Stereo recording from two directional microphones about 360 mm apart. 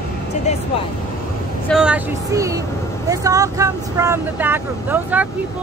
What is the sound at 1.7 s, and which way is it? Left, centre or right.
Speech, centre.